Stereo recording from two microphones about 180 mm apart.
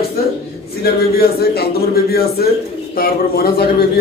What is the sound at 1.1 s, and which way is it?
Speech, 60° left (ahead or behind).